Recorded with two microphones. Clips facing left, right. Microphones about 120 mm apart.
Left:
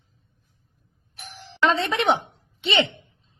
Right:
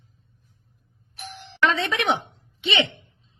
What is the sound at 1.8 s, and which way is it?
Speech, 35° left (ahead or behind).